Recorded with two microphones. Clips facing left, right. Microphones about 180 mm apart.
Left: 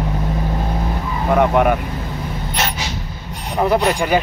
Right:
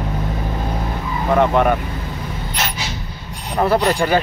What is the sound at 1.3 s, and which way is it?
Speech, 10° left (ahead or behind).